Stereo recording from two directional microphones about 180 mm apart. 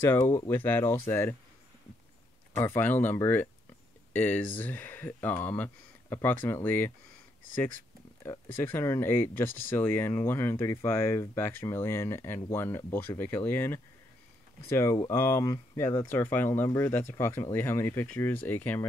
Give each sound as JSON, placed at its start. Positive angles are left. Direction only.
{"t": 0.0, "sound": "speech", "side_deg": 15}
{"t": 2.5, "sound": "speech", "side_deg": 10}
{"t": 8.5, "sound": "speech", "side_deg": 15}